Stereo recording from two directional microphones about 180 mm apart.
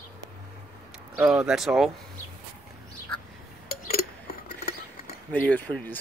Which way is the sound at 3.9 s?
60° left (ahead or behind).